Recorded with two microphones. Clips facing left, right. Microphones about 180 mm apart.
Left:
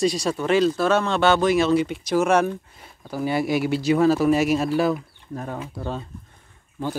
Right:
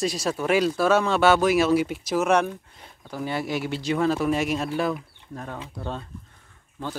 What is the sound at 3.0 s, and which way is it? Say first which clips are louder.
Speech: left 5 dB; 10° left (ahead or behind).